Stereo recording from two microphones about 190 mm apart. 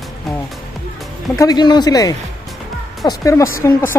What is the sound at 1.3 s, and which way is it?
Speech, 20° left (ahead or behind).